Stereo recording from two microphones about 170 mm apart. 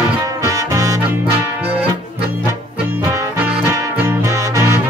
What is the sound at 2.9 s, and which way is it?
Music, 15° right (ahead or behind).